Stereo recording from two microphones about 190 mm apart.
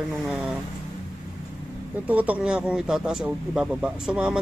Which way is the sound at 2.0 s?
10° right (ahead or behind).